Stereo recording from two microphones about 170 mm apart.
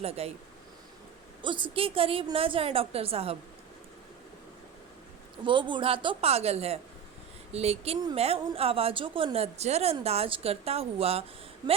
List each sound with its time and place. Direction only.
0.0 s a woman's voice: 35° right (ahead or behind)
1.4 s a woman's voice: 30° right (ahead or behind)
5.5 s a woman's voice: 30° right (ahead or behind)